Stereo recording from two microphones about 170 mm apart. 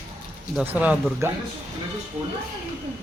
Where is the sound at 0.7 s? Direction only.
10° right (ahead or behind).